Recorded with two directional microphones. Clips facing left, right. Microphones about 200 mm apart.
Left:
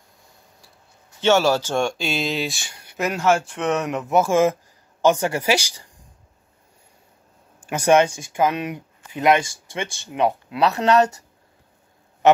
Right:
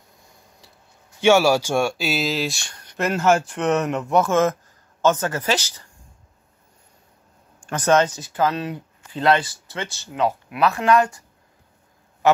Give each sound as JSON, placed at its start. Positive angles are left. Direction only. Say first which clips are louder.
{"t": 1.2, "sound": "speech", "louder": "right 2 dB", "side_deg": -10}
{"t": 7.6, "sound": "speech", "louder": "left 2 dB", "side_deg": 10}